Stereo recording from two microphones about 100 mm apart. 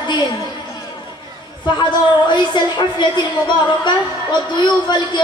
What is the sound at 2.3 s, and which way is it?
Speech, 50° left (ahead or behind).